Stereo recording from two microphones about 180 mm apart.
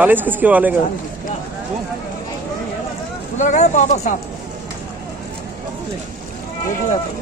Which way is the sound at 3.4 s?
40° left (ahead or behind).